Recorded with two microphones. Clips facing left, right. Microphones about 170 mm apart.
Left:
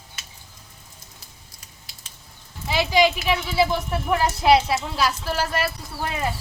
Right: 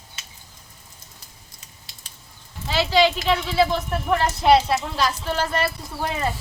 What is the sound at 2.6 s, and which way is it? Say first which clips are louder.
Speech: even; 15° left (ahead or behind).